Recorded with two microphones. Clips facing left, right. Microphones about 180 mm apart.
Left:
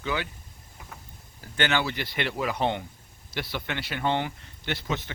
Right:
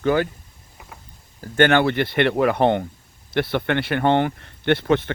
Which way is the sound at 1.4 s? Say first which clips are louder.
Right 10 dB; 55° right (ahead or behind).